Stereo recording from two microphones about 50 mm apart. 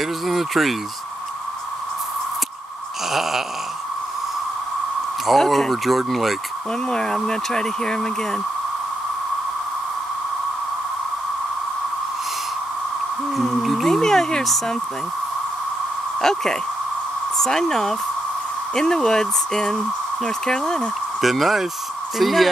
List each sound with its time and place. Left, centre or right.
0.0 s speech: centre
3.1 s speech: centre
5.2 s speech: centre
6.9 s speech: centre
13.4 s music: centre
16.2 s speech: centre
21.2 s speech: centre